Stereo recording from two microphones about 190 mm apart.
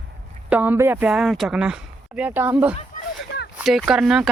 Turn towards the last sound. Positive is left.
turn(degrees=-5)  # may be behind; listen again after turning